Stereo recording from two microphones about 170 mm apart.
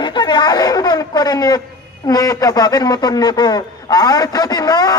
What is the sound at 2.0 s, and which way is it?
A man's voice, 20° left (ahead or behind).